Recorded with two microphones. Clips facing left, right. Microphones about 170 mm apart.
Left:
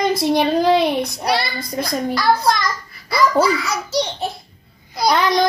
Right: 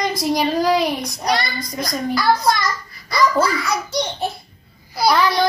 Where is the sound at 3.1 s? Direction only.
5° left (ahead or behind).